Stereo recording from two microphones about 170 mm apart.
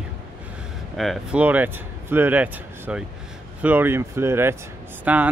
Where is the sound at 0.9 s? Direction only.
Centre (ahead or behind).